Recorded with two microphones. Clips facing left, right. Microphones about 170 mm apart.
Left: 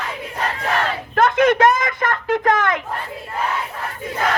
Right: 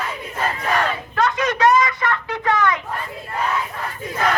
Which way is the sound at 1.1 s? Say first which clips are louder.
Left 7 dB; 55° left (ahead or behind).